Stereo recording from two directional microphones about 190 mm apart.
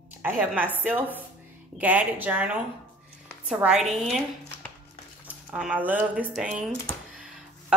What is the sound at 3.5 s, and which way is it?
Speech, 5° right (ahead or behind).